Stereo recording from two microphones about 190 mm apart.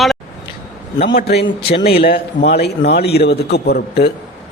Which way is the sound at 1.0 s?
55° left (ahead or behind).